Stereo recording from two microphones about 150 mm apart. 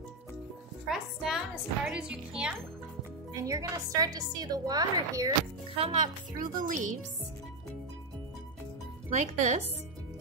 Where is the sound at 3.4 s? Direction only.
20° right (ahead or behind).